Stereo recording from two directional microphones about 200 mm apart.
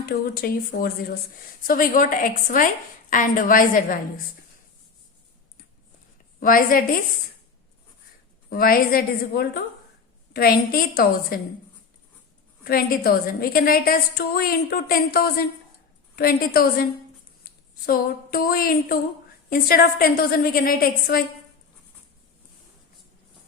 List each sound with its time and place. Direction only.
0.0 s a woman's voice: 50° left (ahead or behind)
6.4 s a woman's voice: 45° left (ahead or behind)
8.4 s a woman's voice: 45° left (ahead or behind)
12.6 s a woman's voice: 50° left (ahead or behind)
17.8 s a woman's voice: 45° left (ahead or behind)